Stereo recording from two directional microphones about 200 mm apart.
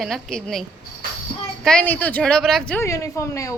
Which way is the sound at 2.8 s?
15° left (ahead or behind).